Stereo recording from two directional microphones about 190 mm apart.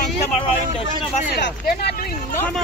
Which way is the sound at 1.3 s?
60° left (ahead or behind).